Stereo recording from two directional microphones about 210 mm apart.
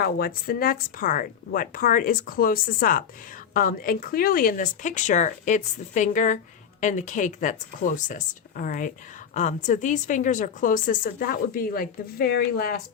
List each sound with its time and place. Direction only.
0.0 s speech: 45° left (ahead or behind)